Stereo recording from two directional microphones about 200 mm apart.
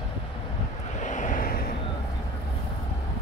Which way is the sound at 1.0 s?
40° left (ahead or behind).